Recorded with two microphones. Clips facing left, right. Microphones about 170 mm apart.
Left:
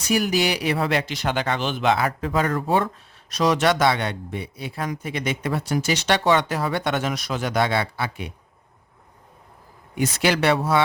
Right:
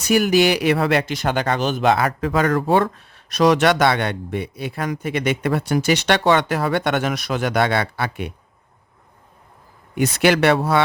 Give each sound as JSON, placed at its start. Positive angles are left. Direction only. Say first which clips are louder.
{"t": 0.1, "sound": "speech", "louder": "right 6 dB", "side_deg": -65}
{"t": 2.0, "sound": "speech", "louder": "right 4 dB", "side_deg": -80}
{"t": 9.9, "sound": "speech", "louder": "right 5 dB", "side_deg": -65}